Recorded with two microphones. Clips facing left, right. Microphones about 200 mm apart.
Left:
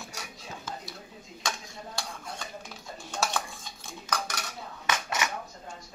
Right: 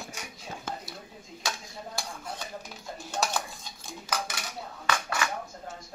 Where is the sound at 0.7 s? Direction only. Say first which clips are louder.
Right 3 dB; 60° right (ahead or behind).